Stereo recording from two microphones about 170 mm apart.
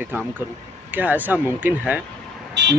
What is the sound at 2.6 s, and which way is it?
Vehicle, 90° right.